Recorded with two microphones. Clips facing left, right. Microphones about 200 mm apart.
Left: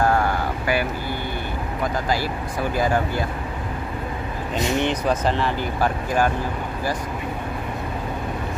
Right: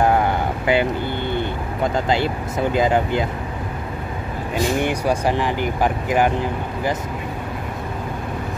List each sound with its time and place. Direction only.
0.0 s a sound: 20° right (ahead or behind)
2.0 s speech: 25° right (ahead or behind)
4.7 s speech: 10° right (ahead or behind)